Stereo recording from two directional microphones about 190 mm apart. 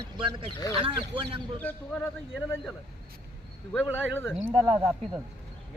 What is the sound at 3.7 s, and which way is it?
Speech, 10° left (ahead or behind).